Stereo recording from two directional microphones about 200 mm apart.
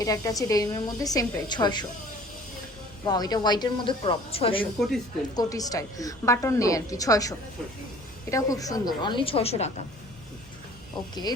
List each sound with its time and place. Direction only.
0.0 s a woman's voice: 15° left (ahead or behind)
3.1 s a woman's voice: 20° left (ahead or behind)
4.6 s a woman's voice: centre (ahead or behind)
5.3 s a woman's voice: 20° left (ahead or behind)
11.1 s a woman's voice: 20° left (ahead or behind)